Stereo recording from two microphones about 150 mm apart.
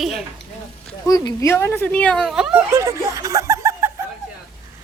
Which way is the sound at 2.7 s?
20° right (ahead or behind).